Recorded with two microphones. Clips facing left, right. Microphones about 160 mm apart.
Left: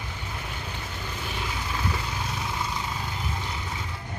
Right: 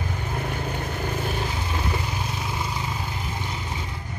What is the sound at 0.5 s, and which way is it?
Vehicle, 50° right (ahead or behind).